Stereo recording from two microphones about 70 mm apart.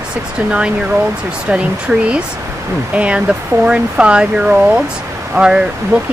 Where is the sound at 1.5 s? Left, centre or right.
Centre.